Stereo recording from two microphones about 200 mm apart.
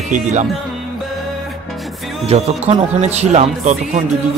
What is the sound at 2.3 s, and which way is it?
A man's voice, 30° right (ahead or behind).